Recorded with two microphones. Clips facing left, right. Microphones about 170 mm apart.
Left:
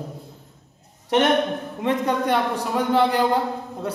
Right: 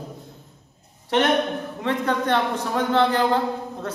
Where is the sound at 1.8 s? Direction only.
15° left (ahead or behind).